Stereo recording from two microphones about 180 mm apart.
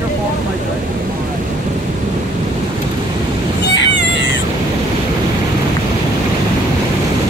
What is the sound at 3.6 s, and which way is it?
Cat, 85° left.